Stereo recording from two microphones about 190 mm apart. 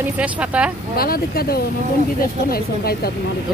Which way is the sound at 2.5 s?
55° left (ahead or behind).